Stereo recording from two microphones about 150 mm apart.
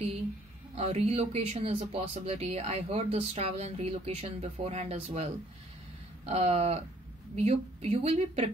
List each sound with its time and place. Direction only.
0.7 s speech: 45° right (ahead or behind)